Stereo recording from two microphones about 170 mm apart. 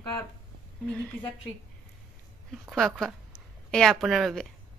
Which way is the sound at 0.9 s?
5° left (ahead or behind).